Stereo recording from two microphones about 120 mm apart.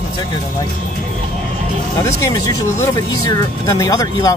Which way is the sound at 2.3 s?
30° left (ahead or behind).